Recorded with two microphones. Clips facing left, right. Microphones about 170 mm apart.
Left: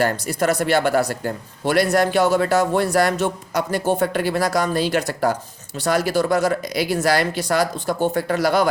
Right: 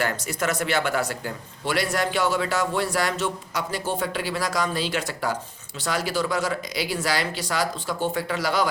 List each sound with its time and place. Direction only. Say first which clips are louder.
0.0 s speech: left 6 dB; 35° left (ahead or behind)